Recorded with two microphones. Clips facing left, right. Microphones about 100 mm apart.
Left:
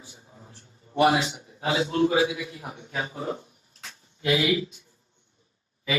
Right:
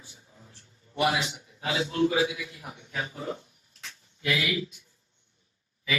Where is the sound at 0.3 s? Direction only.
35° left (ahead or behind).